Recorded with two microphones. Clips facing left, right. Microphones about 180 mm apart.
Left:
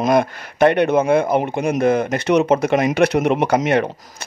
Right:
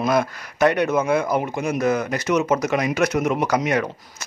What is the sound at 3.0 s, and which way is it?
Speech, 35° left (ahead or behind).